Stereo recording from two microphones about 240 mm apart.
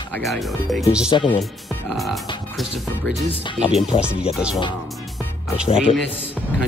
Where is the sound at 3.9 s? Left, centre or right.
Left.